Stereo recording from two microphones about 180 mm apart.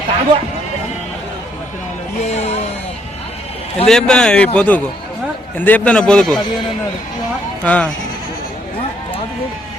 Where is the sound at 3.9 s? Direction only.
5° left (ahead or behind).